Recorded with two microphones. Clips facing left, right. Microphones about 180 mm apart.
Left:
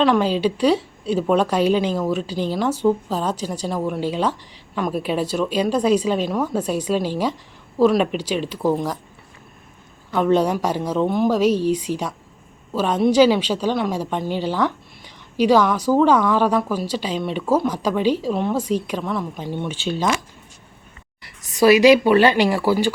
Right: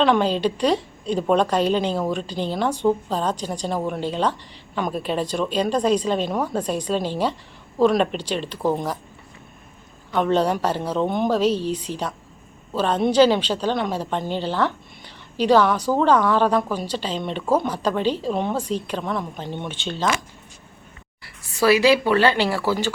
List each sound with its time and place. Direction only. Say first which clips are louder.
0.0 s a woman's voice: left 1 dB; 5° left (ahead or behind)
10.1 s a woman's voice: left 2 dB; 5° left (ahead or behind)
21.2 s a woman's voice: left 4 dB; 15° left (ahead or behind)